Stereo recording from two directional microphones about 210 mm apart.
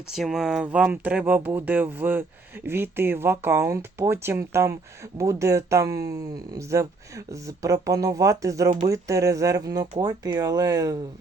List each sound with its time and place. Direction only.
0.1 s speech: centre (ahead or behind); by 10.9 s 15° right (ahead or behind)